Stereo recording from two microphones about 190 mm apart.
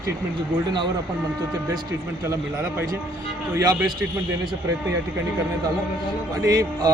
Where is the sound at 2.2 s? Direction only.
15° right (ahead or behind).